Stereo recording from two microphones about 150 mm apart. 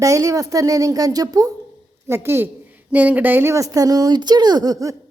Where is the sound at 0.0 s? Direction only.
20° right (ahead or behind).